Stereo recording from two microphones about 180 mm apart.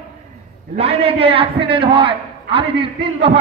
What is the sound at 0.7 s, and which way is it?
A man's voice, 35° right (ahead or behind).